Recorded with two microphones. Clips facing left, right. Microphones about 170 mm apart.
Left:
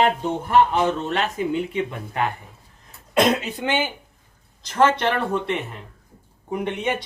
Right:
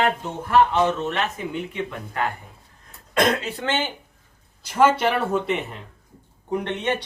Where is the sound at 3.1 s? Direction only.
20° left (ahead or behind).